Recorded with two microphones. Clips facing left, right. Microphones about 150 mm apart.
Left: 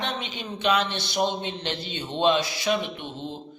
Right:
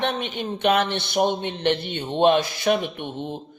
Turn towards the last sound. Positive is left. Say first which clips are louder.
# right 4 dB
turn(degrees=-55)  # may be behind; listen again after turning